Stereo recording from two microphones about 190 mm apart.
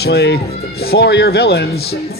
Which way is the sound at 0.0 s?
60° left (ahead or behind).